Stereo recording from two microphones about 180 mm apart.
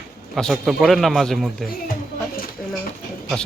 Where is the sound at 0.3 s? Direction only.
Centre (ahead or behind).